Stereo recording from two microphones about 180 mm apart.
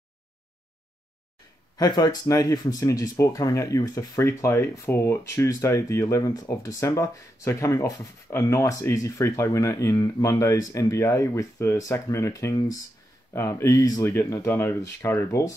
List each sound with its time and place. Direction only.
1.8 s speech: 20° left (ahead or behind)